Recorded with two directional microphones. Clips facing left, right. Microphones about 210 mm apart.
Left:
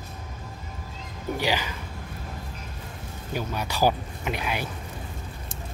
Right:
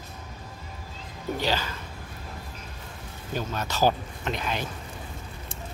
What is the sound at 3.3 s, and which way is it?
Speech, 10° left (ahead or behind).